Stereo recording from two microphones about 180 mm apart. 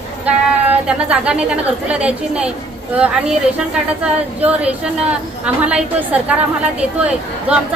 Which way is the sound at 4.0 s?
5° right (ahead or behind).